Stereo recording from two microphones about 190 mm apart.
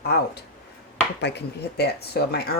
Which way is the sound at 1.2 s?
65° left (ahead or behind).